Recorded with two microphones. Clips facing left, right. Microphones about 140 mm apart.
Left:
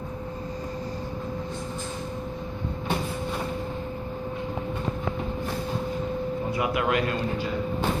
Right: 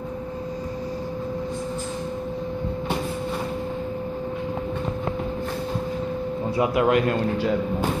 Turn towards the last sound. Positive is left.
turn(degrees=-45)  # may be behind; listen again after turning